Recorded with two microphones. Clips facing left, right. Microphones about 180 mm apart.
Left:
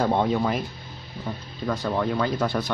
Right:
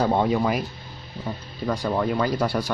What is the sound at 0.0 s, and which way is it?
Speech, 5° right (ahead or behind).